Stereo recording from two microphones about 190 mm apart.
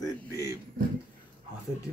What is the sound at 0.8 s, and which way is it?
Speech, 50° right (ahead or behind).